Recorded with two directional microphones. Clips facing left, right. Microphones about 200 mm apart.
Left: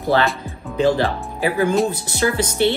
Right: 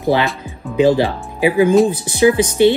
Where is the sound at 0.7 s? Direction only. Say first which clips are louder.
Right 4 dB; 15° right (ahead or behind).